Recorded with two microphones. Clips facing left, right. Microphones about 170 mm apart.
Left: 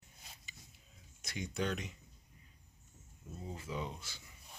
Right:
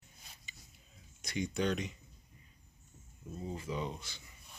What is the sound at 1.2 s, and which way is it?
Speech, 5° left (ahead or behind).